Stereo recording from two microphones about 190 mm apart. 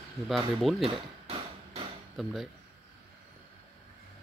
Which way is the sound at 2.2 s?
Centre (ahead or behind).